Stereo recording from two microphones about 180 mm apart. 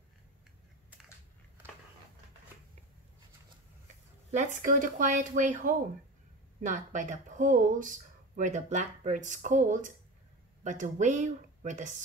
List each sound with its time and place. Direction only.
4.3 s speech: 45° right (ahead or behind)